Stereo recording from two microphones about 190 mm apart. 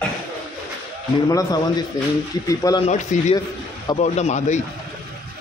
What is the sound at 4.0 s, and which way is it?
Speech, 35° left (ahead or behind).